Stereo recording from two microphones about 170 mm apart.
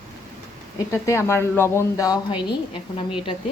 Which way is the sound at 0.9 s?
15° left (ahead or behind).